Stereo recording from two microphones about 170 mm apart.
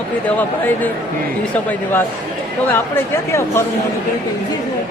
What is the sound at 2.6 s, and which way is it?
Speech, 10° left (ahead or behind).